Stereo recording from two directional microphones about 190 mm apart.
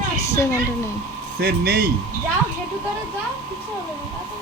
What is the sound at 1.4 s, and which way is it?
Speech, 55° right (ahead or behind).